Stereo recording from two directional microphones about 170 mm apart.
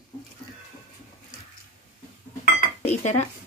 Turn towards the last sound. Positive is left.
turn(degrees=40)  # may be behind; listen again after turning